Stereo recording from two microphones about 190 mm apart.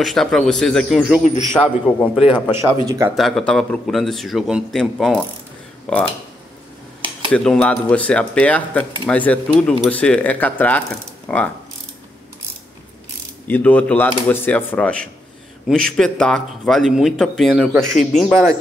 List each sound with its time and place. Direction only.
0.0 s speech: centre (ahead or behind)
2.5 s speech: 15° right (ahead or behind)
3.2 s speech: centre (ahead or behind)
7.2 s speech: 5° left (ahead or behind)
13.5 s speech: 10° left (ahead or behind)